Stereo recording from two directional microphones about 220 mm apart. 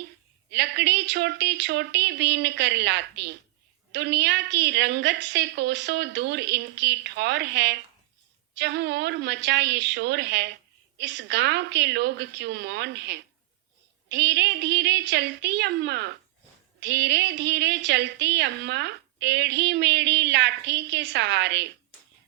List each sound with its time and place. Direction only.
0.5 s a woman's voice: 50° right (ahead or behind)